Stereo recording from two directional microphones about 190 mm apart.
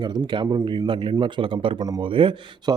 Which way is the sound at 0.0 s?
25° right (ahead or behind).